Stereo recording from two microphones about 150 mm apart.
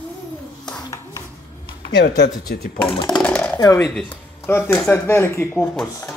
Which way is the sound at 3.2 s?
10° left (ahead or behind).